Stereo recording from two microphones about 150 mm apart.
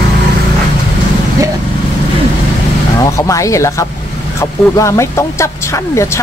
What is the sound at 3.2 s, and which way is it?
Speech, 20° left (ahead or behind).